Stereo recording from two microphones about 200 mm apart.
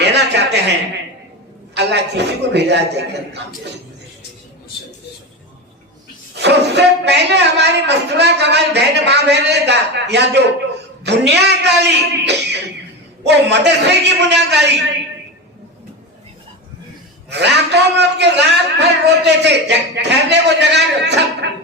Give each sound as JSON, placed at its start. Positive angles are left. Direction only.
{"t": 0.0, "sound": "a sound", "side_deg": -60}
{"t": 1.7, "sound": "a man's voice", "side_deg": -60}
{"t": 6.3, "sound": "a man's voice", "side_deg": -55}
{"t": 17.2, "sound": "a man's voice", "side_deg": -60}